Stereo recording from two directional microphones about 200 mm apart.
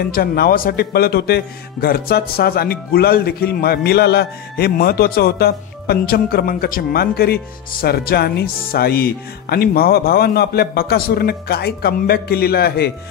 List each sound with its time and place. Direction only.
0.1 s a man's voice: 50° left (ahead or behind)